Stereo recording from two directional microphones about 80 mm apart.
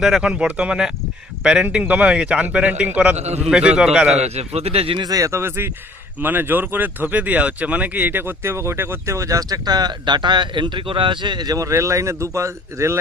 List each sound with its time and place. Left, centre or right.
0.0 s a man's voice: centre
5.0 s speech: right
5.3 s speech: right